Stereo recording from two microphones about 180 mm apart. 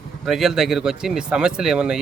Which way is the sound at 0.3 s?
Centre (ahead or behind).